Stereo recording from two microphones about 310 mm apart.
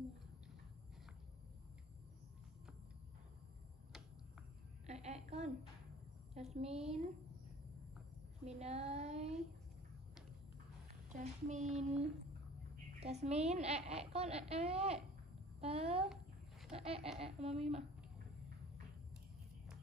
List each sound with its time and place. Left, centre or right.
4.8 s a sound: right
6.5 s a child's voice: centre
8.5 s a child's voice: right
11.1 s a child's voice: right